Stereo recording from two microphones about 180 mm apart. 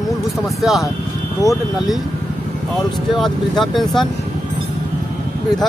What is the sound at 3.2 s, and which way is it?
Speech, centre (ahead or behind).